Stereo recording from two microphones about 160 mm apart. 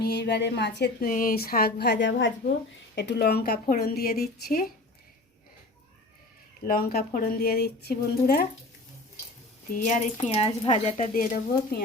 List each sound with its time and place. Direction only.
0.0 s a woman's voice: 90° left; by 4.6 s 70° left (ahead or behind)
6.7 s speech: 70° left (ahead or behind)
9.6 s speech: 55° left (ahead or behind); by 10.9 s 35° left (ahead or behind)
11.1 s speech: 60° left (ahead or behind)